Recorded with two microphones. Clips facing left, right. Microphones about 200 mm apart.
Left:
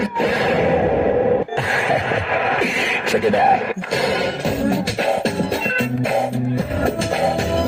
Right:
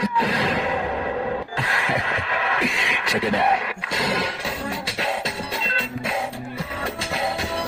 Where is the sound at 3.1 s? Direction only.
50° left (ahead or behind).